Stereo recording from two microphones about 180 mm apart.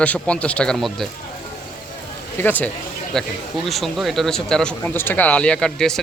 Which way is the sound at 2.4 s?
10° left (ahead or behind).